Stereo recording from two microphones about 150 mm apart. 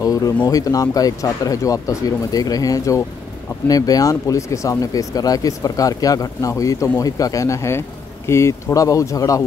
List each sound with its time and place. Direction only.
0.0 s speech: 25° left (ahead or behind)